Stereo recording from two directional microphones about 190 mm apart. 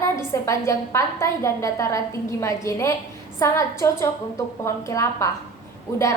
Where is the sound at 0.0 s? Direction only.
15° left (ahead or behind).